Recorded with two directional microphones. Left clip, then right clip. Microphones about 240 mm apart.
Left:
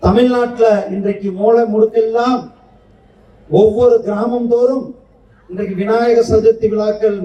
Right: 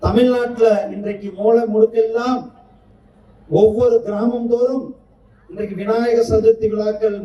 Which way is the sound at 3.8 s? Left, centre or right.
Right.